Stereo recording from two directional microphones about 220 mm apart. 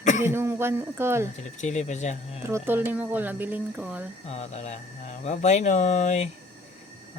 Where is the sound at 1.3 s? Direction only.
30° left (ahead or behind).